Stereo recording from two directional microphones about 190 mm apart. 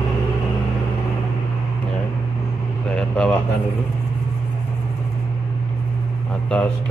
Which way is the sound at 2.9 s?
5° left (ahead or behind).